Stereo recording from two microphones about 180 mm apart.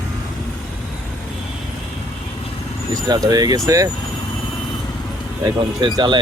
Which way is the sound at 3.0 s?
20° right (ahead or behind).